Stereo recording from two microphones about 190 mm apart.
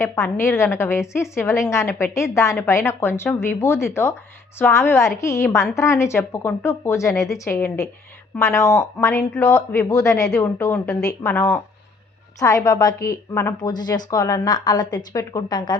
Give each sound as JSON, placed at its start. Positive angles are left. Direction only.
{"t": 0.3, "sound": "a woman's voice", "side_deg": 15}